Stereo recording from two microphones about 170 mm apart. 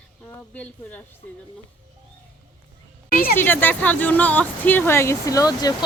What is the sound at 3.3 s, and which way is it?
Speech, 10° left (ahead or behind).